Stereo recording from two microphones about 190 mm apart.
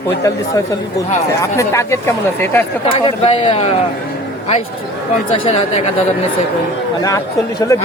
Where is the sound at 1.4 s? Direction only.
15° left (ahead or behind).